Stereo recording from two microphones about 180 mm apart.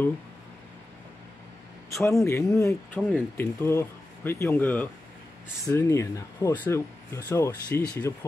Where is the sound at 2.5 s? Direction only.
15° left (ahead or behind).